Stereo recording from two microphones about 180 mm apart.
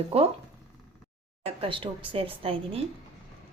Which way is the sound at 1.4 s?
30° right (ahead or behind).